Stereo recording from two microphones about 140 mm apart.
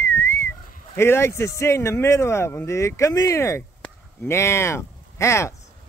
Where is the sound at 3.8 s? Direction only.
20° left (ahead or behind).